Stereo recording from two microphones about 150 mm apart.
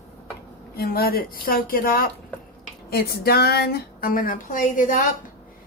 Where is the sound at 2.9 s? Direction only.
90° left; by 5.0 s 65° left (ahead or behind).